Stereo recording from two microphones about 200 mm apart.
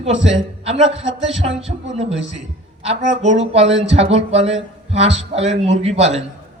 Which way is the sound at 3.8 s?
30° right (ahead or behind).